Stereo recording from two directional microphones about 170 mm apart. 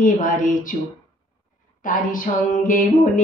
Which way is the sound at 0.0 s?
50° left (ahead or behind).